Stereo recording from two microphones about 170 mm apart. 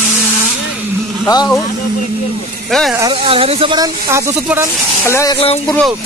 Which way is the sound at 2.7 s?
Centre (ahead or behind).